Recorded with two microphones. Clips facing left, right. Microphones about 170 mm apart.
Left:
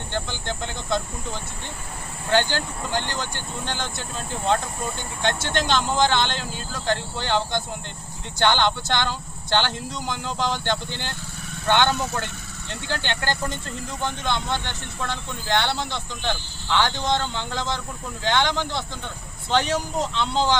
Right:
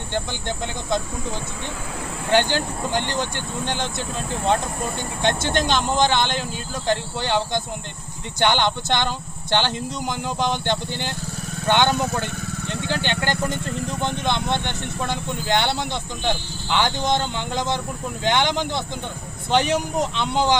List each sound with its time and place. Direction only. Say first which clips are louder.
0.1 s speech: right 3 dB; 15° right (ahead or behind)
2.3 s speech: right 2 dB; 15° right (ahead or behind)
5.2 s speech: right 3 dB; 20° right (ahead or behind)
12.2 s vehicle: right 7 dB; 60° right (ahead or behind)
12.9 s speech: right 2 dB; 20° right (ahead or behind)